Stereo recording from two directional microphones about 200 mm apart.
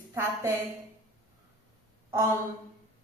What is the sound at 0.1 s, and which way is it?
Speech, 15° right (ahead or behind).